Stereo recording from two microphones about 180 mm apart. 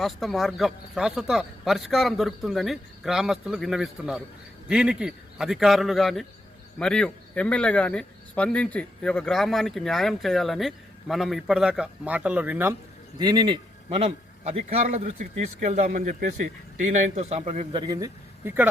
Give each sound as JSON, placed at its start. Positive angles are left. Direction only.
{"t": 0.0, "sound": "speech", "side_deg": 0}
{"t": 13.1, "sound": "a man's voice", "side_deg": -25}